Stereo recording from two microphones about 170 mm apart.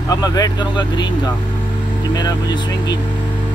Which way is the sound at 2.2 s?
25° left (ahead or behind).